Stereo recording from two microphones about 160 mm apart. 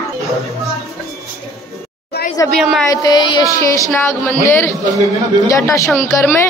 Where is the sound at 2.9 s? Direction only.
25° left (ahead or behind).